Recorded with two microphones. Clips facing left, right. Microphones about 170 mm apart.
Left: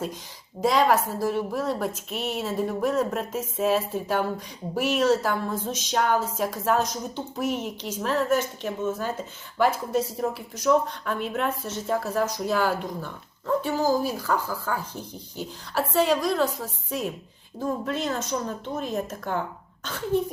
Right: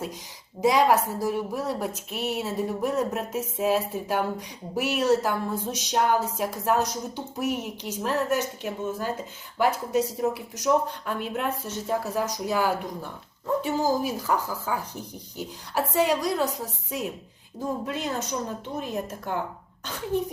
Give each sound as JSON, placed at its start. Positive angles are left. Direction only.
{"t": 0.6, "sound": "a woman's voice", "side_deg": -15}